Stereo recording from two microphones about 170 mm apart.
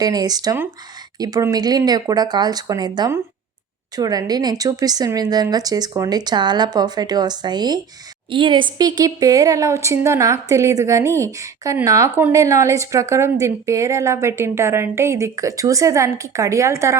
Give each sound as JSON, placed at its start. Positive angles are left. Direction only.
{"t": 0.0, "sound": "a woman's voice", "side_deg": -25}